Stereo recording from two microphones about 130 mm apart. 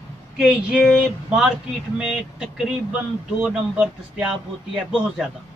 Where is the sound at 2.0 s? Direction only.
5° right (ahead or behind).